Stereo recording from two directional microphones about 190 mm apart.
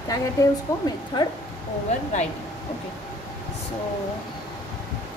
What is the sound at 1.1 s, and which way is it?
Speech, 25° left (ahead or behind).